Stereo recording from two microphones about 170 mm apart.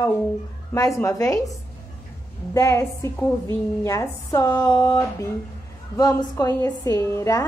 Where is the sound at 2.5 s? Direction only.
15° left (ahead or behind).